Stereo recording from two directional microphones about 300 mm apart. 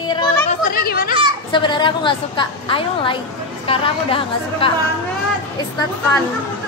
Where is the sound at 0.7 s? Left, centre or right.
Left.